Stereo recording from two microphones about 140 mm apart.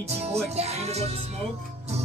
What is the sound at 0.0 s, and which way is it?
Music, 50° right (ahead or behind).